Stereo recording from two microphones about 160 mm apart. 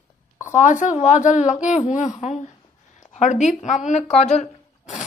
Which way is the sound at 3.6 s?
50° left (ahead or behind).